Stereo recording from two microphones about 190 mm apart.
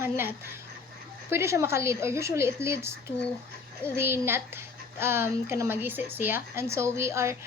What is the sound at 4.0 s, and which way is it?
Speech, 10° right (ahead or behind).